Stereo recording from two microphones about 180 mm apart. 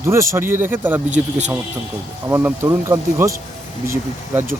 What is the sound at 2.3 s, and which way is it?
Speech, 15° right (ahead or behind).